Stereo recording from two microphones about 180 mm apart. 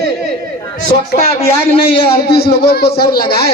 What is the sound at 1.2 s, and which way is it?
A man's voice, 35° left (ahead or behind).